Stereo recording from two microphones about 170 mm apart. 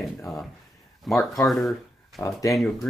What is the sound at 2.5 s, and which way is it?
Speech, centre (ahead or behind).